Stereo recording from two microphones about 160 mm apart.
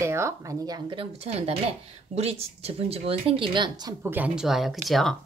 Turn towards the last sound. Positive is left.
turn(degrees=0)  # may be behind; listen again after turning